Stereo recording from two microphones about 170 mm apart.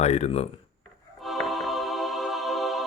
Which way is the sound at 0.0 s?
40° left (ahead or behind).